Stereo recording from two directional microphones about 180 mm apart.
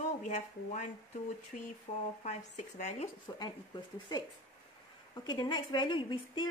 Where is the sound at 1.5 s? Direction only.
45° left (ahead or behind).